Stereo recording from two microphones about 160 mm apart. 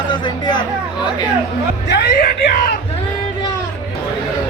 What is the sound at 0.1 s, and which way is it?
Speech, 30° left (ahead or behind).